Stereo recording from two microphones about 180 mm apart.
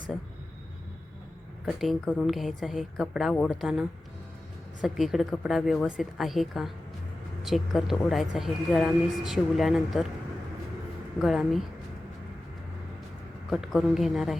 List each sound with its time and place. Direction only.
1.6 s a woman's voice: centre (ahead or behind)
11.2 s a woman's voice: centre (ahead or behind)
13.5 s a woman's voice: centre (ahead or behind)